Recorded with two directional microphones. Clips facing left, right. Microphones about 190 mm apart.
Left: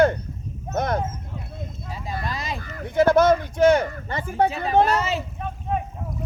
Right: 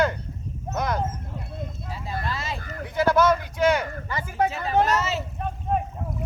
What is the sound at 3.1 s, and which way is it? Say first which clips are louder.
Speech: left 3 dB; 25° left (ahead or behind).